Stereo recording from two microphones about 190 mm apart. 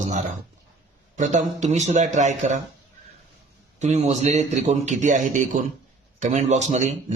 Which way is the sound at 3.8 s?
35° right (ahead or behind).